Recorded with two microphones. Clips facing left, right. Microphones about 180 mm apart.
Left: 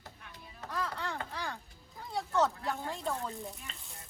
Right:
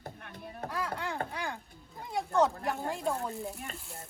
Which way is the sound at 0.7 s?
10° right (ahead or behind).